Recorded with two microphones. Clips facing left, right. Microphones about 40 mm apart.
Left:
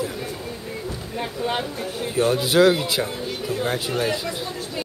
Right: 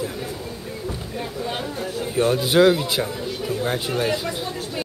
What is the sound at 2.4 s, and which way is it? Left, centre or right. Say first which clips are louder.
A man's voice: right 1 dB; centre.